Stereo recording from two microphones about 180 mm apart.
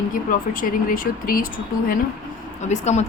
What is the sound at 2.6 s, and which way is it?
Speech, 40° left (ahead or behind).